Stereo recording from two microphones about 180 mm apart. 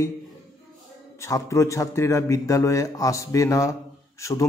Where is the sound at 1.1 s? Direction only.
15° left (ahead or behind).